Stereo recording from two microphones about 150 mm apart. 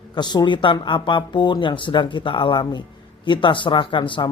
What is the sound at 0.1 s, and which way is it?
A man's voice, 30° left (ahead or behind).